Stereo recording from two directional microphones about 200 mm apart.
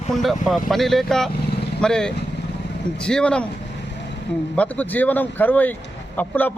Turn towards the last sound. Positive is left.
turn(degrees=10)  # may be behind; listen again after turning